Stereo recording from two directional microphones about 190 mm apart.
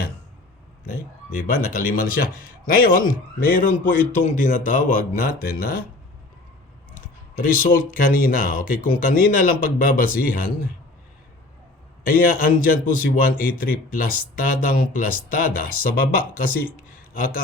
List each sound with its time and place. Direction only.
1.4 s a man's voice: 45° left (ahead or behind)
7.4 s a man's voice: 45° left (ahead or behind)
12.0 s a man's voice: 50° left (ahead or behind)